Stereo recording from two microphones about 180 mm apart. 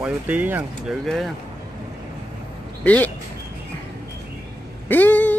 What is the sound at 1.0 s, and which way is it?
Speech, centre (ahead or behind).